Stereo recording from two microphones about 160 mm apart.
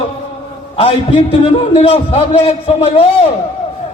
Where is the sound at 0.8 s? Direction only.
35° left (ahead or behind).